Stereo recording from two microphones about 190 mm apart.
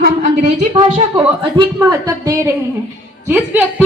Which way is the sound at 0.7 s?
25° right (ahead or behind).